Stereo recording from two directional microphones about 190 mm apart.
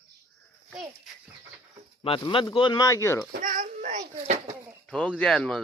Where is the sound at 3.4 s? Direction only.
45° right (ahead or behind).